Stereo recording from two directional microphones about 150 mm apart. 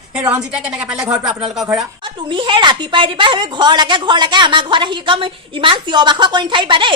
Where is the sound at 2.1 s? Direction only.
30° right (ahead or behind).